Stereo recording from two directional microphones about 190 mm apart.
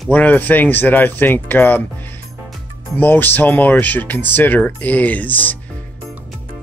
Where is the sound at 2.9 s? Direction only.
10° left (ahead or behind).